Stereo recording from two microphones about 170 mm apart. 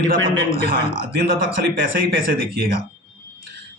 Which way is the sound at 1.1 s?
60° right (ahead or behind).